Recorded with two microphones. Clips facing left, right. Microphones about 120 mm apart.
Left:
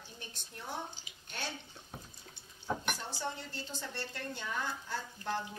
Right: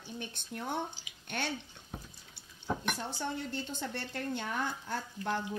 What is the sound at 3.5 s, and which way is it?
A woman's voice, 55° right (ahead or behind).